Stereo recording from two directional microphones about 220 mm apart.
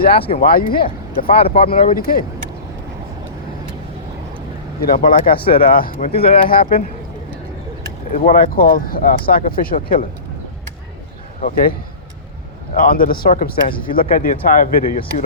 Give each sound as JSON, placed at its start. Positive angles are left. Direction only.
{"t": 0.3, "sound": "speech", "side_deg": 40}
{"t": 1.3, "sound": "speech", "side_deg": 25}
{"t": 1.7, "sound": "speech", "side_deg": 40}
{"t": 4.8, "sound": "speech", "side_deg": 40}
{"t": 6.0, "sound": "speech", "side_deg": 25}
{"t": 6.5, "sound": "speech", "side_deg": 40}
{"t": 8.1, "sound": "speech", "side_deg": 40}
{"t": 11.3, "sound": "speech", "side_deg": 40}
{"t": 12.8, "sound": "speech", "side_deg": 40}